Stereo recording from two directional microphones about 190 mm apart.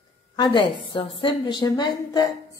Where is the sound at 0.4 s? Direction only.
25° left (ahead or behind).